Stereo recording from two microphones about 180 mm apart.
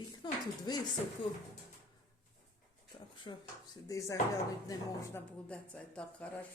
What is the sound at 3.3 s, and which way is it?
Speech, 25° left (ahead or behind).